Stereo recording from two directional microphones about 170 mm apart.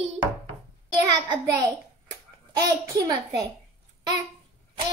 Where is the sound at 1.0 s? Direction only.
25° right (ahead or behind).